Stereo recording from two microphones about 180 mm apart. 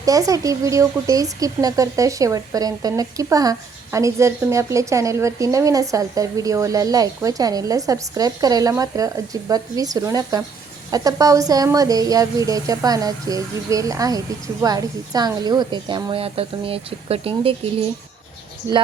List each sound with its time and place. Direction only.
0.0 s speech: 20° right (ahead or behind)